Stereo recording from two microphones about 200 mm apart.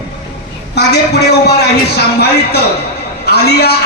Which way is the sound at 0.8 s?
55° left (ahead or behind).